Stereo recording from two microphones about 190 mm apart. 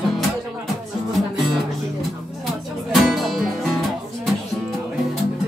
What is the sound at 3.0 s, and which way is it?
Music, centre (ahead or behind).